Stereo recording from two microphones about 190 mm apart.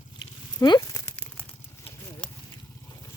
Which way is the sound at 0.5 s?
20° left (ahead or behind).